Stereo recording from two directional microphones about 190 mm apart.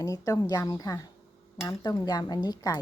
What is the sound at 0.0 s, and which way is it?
Speech, 15° left (ahead or behind).